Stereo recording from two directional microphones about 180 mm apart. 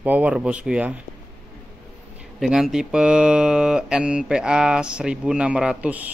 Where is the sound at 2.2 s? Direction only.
Centre (ahead or behind).